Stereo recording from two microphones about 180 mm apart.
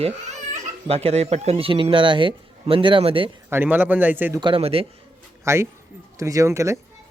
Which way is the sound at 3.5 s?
10° right (ahead or behind).